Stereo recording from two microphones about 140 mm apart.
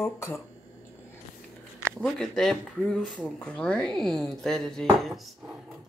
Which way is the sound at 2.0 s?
5° left (ahead or behind).